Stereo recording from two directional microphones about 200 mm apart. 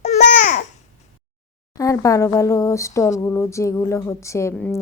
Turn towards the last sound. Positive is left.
turn(degrees=15)  # may be behind; listen again after turning